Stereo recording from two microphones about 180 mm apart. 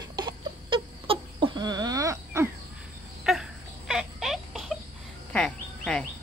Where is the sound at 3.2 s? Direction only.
Centre (ahead or behind).